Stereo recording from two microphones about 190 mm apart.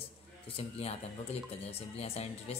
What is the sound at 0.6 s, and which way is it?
Speech, 30° left (ahead or behind).